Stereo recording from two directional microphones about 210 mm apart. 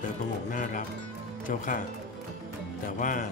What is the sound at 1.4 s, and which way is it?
Speech, 40° left (ahead or behind).